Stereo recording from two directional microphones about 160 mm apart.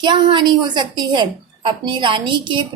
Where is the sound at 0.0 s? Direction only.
30° right (ahead or behind).